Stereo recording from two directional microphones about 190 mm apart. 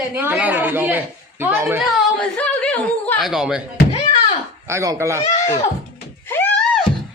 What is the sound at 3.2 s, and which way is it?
Speech, centre (ahead or behind).